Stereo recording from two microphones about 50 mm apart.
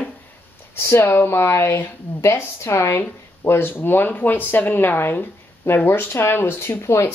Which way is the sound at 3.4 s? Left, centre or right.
Left.